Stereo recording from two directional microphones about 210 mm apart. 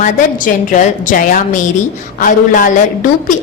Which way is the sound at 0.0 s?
35° left (ahead or behind).